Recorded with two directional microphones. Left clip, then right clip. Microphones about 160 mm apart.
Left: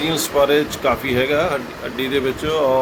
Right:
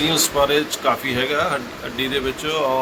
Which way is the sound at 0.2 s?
60° left (ahead or behind).